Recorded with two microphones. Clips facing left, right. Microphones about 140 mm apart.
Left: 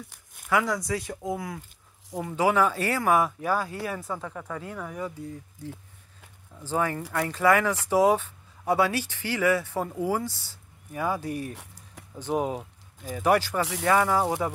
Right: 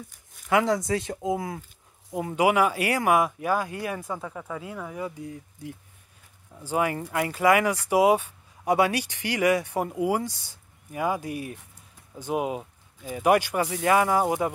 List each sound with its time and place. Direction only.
0.5 s speech: 25° right (ahead or behind)
2.3 s speech: 15° right (ahead or behind)